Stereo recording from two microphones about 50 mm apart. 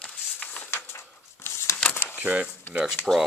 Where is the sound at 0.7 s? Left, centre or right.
Left.